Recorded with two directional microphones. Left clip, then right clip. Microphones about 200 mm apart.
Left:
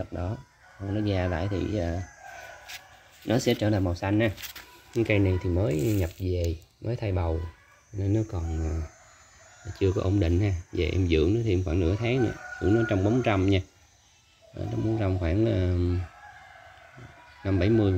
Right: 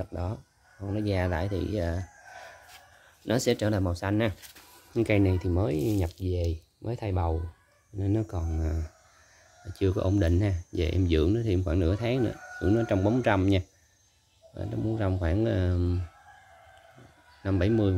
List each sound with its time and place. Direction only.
0.0 s speech: 10° right (ahead or behind)
3.3 s speech: 15° right (ahead or behind)
15.0 s speech: 10° right (ahead or behind)
17.4 s speech: 10° right (ahead or behind)